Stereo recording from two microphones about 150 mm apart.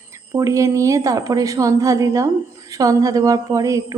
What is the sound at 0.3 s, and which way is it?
A woman's voice, 20° right (ahead or behind).